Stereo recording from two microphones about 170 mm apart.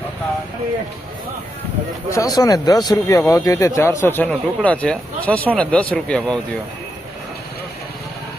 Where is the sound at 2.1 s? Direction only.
20° left (ahead or behind).